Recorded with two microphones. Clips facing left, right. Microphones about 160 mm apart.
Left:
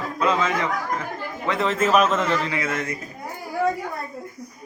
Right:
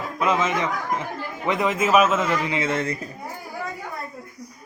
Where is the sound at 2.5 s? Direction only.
25° right (ahead or behind).